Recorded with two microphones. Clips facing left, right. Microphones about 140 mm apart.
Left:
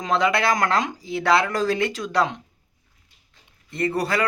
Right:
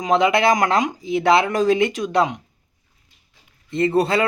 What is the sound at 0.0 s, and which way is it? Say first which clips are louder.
Speech: right 4 dB; 20° right (ahead or behind).